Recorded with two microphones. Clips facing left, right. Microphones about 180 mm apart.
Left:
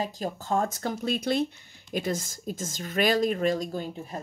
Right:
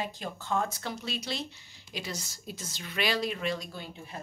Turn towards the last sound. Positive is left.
turn(degrees=45)  # may be behind; listen again after turning